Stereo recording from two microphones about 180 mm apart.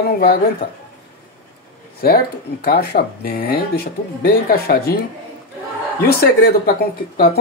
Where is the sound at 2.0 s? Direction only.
55° left (ahead or behind).